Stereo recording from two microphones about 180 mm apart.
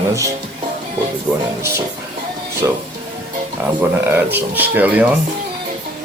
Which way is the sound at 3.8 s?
10° right (ahead or behind).